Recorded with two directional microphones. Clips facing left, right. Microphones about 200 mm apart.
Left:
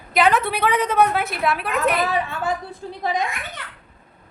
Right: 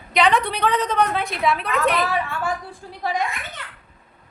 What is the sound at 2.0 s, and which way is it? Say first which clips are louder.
A woman's voice: left 1 dB; 20° left (ahead or behind).